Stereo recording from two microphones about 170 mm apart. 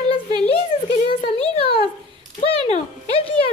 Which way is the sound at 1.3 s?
35° left (ahead or behind).